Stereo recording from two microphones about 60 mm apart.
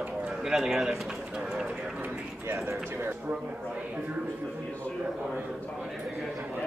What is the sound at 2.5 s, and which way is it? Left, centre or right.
Speech, right.